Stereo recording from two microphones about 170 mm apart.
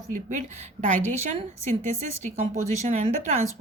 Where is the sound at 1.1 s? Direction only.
40° right (ahead or behind).